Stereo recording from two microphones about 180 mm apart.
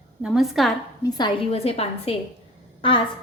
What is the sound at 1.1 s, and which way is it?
A woman's voice, 25° left (ahead or behind).